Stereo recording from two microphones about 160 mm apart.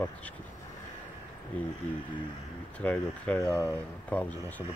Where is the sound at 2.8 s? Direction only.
10° left (ahead or behind).